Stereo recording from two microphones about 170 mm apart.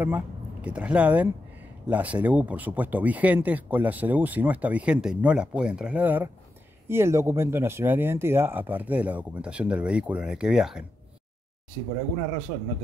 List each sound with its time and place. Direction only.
0.0 s speech: 10° right (ahead or behind)